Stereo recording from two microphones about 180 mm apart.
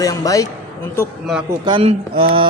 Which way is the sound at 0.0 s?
20° left (ahead or behind).